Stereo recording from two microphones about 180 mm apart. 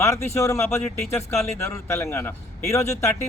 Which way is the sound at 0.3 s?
15° left (ahead or behind).